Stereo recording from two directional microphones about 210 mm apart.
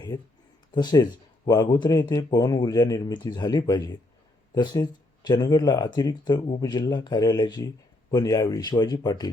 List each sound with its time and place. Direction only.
0.1 s speech: 20° left (ahead or behind)